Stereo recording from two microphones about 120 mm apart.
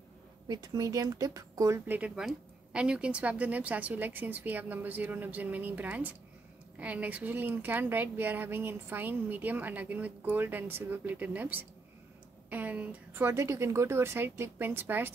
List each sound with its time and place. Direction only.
0.5 s a woman's voice: 30° right (ahead or behind)
1.9 s a woman's voice: 10° right (ahead or behind)